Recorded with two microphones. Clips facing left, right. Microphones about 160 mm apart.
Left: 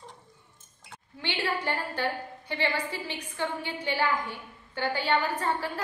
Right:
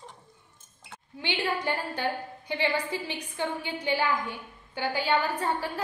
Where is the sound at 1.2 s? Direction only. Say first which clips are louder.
Right 1 dB; 15° right (ahead or behind).